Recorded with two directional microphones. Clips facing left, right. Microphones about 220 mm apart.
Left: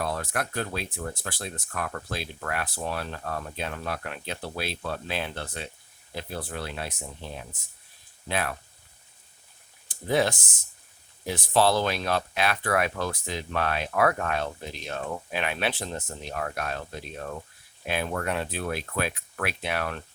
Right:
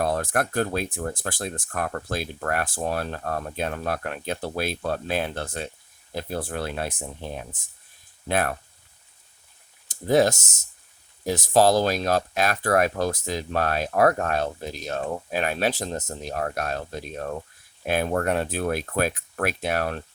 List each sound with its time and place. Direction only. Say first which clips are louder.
0.0 s speech: right 6 dB; 50° right (ahead or behind)
9.9 s speech: right 5 dB; 40° right (ahead or behind)